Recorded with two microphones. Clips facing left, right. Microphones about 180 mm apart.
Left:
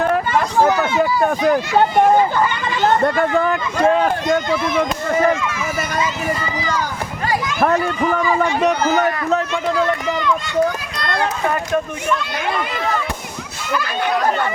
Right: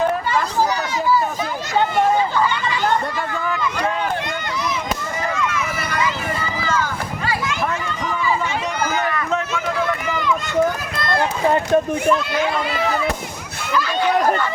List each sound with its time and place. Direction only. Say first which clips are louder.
2.0 s speech: left 3 dB; 50° left (ahead or behind)
8.4 s speech: left 6 dB; 60° left (ahead or behind)